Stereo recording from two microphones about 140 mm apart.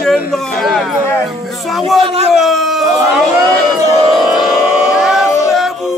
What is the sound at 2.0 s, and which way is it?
Speech, 45° right (ahead or behind).